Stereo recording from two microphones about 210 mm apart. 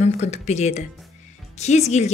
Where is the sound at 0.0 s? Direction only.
35° left (ahead or behind).